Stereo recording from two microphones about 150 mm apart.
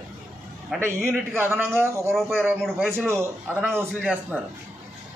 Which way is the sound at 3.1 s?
15° right (ahead or behind).